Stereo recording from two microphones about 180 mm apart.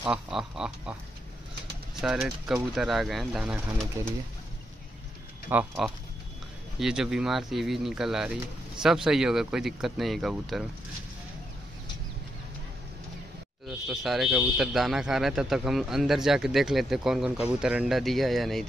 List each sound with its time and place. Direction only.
0.0 s speech: 5° right (ahead or behind)
2.0 s speech: centre (ahead or behind)
5.5 s speech: 5° right (ahead or behind)
13.7 s speech: centre (ahead or behind)